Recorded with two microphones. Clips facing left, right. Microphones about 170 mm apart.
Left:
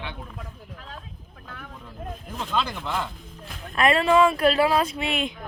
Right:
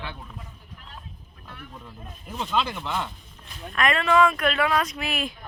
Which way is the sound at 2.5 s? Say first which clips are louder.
Even; centre (ahead or behind).